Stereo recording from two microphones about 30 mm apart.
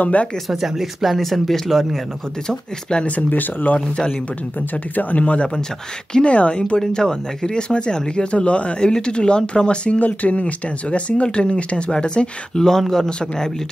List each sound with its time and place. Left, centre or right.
0.0 s speech: left
0.5 s speech: centre
1.1 s speech: centre
2.4 s speech: left
3.1 s speech: left
3.9 s speech: left
4.6 s speech: left
6.2 s speech: left
6.9 s speech: left
8.7 s speech: left
9.9 s speech: left
10.4 s speech: left
12.5 s speech: centre